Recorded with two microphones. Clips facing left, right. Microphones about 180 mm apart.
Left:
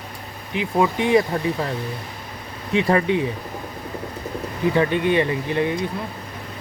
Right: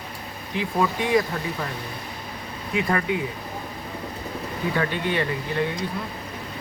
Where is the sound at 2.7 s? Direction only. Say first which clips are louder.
Left 5 dB; 25° left (ahead or behind).